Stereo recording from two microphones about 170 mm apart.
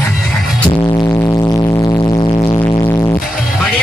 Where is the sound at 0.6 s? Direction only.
25° left (ahead or behind).